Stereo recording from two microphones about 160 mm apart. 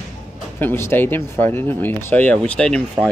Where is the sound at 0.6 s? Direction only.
15° left (ahead or behind).